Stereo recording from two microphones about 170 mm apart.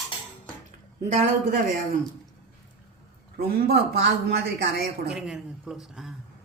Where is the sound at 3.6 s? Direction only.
70° right (ahead or behind).